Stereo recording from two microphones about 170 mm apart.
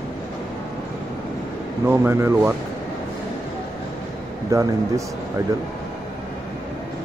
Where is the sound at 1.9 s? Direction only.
15° right (ahead or behind).